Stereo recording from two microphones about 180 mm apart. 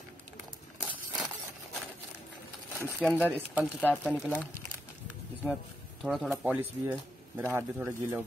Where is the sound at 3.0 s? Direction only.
5° right (ahead or behind).